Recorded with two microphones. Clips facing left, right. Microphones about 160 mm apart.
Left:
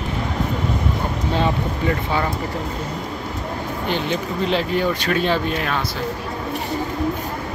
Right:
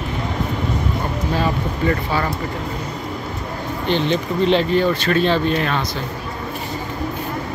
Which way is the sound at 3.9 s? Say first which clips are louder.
Right 5 dB; 10° left (ahead or behind).